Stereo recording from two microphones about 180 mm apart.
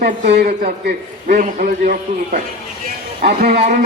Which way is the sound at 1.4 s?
45° right (ahead or behind).